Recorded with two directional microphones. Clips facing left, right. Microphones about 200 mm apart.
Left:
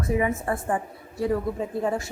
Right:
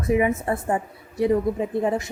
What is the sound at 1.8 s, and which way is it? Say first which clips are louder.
Speech: right 2 dB; 20° right (ahead or behind).